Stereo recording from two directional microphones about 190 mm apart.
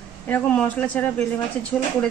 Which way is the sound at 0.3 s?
10° left (ahead or behind).